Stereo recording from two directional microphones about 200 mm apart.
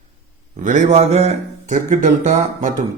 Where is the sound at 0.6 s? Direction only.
35° right (ahead or behind).